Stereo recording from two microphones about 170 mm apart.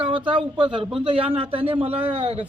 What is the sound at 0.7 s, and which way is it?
Speech, 30° right (ahead or behind).